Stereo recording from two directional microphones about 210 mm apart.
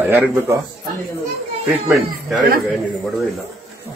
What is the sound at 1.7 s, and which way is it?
Speech, 10° right (ahead or behind).